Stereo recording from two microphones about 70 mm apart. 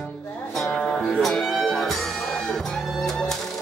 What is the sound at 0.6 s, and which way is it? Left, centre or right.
Music, centre.